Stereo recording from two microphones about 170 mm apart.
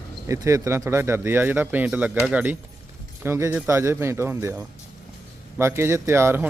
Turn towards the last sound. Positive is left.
turn(degrees=-15)  # may be behind; listen again after turning